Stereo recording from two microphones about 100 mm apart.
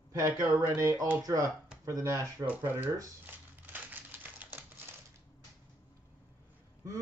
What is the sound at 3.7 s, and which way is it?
Typewriter, 15° right (ahead or behind).